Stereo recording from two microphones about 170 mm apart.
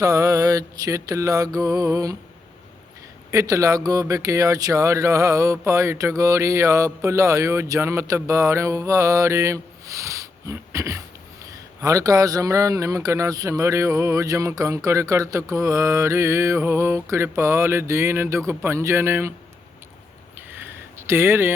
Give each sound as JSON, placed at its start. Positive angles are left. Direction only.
{"t": 0.0, "sound": "mantra", "side_deg": -20}
{"t": 3.3, "sound": "a man's voice", "side_deg": -20}
{"t": 20.3, "sound": "a sound", "side_deg": -10}